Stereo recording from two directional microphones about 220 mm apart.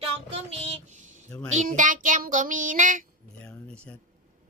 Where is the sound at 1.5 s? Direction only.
35° right (ahead or behind).